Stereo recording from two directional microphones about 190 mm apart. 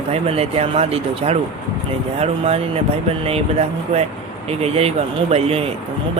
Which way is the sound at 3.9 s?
35° right (ahead or behind).